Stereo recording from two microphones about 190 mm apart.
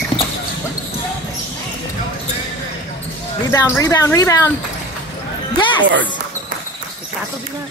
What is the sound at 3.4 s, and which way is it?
Speech, 15° left (ahead or behind).